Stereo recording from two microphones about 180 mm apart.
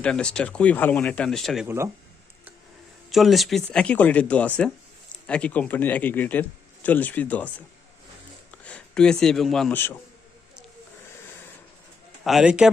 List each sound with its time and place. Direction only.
0.0 s speech: 5° left (ahead or behind)
1.6 s speech: 15° right (ahead or behind)
3.1 s speech: centre (ahead or behind)
8.6 s speech: 5° left (ahead or behind)
12.2 s speech: centre (ahead or behind)